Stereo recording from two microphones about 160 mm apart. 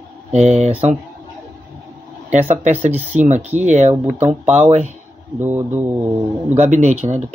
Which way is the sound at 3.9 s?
15° right (ahead or behind).